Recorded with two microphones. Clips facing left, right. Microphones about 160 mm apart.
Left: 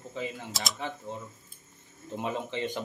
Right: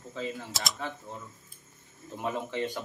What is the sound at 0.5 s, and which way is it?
Speech, centre (ahead or behind).